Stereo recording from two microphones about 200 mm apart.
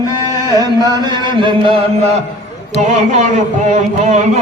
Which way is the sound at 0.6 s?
20° right (ahead or behind).